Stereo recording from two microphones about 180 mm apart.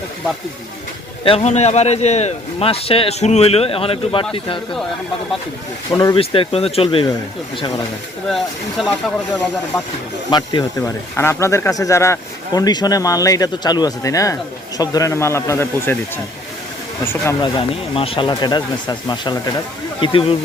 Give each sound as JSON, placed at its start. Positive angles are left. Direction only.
{"t": 1.2, "sound": "a man's voice", "side_deg": 30}
{"t": 5.9, "sound": "speech", "side_deg": 20}
{"t": 8.8, "sound": "speech", "side_deg": 0}
{"t": 10.3, "sound": "speech", "side_deg": 25}
{"t": 17.4, "sound": "speech", "side_deg": 30}